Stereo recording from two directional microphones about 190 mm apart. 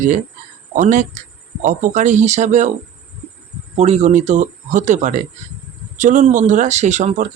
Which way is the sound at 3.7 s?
35° right (ahead or behind).